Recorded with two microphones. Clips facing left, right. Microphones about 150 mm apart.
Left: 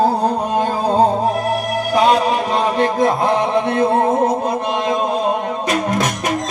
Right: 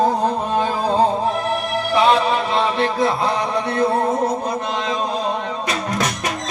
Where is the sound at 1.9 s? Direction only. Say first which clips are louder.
Left 2 dB; 40° left (ahead or behind).